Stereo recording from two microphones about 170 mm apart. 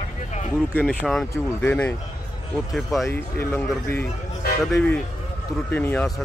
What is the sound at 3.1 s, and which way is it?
Speech, 15° left (ahead or behind).